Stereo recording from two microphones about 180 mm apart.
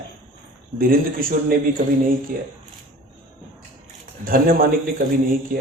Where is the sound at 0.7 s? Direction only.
55° right (ahead or behind).